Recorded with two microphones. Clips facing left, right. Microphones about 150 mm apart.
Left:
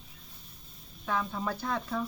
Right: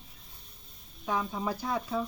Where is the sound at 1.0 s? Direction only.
15° right (ahead or behind).